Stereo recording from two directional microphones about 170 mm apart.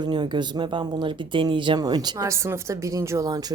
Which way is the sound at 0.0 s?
25° right (ahead or behind).